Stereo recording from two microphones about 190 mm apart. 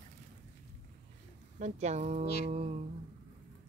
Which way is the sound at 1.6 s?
35° right (ahead or behind).